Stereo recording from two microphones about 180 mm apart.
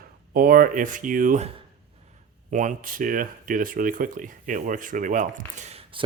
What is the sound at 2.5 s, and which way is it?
Speech, 45° right (ahead or behind).